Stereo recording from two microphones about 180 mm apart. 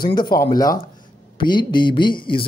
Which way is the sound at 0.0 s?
25° left (ahead or behind).